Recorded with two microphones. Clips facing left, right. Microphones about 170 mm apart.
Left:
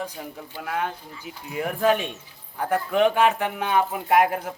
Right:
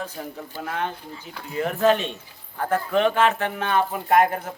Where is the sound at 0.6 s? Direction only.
5° left (ahead or behind).